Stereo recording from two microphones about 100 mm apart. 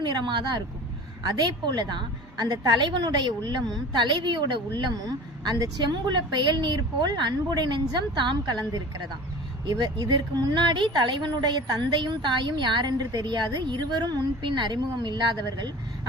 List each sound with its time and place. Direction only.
0.0 s a woman's voice: 50° right (ahead or behind)